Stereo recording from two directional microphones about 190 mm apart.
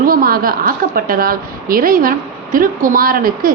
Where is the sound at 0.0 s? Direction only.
50° right (ahead or behind).